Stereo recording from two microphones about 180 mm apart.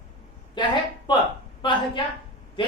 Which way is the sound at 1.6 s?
25° left (ahead or behind).